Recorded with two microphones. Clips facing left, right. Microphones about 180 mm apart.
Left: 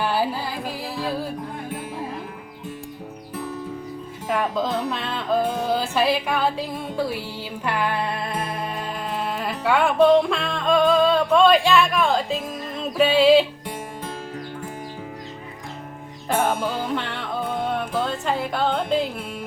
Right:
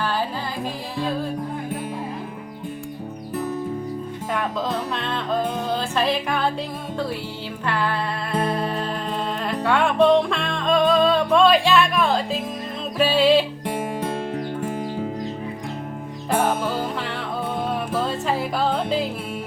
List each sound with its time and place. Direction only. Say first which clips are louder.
0.0 s music: left 2 dB; 10° left (ahead or behind)
4.3 s music: left 2 dB; 5° left (ahead or behind)
7.6 s music: even; 15° left (ahead or behind)
9.4 s music: even; 5° left (ahead or behind)
17.7 s music: right 1 dB; 5° right (ahead or behind)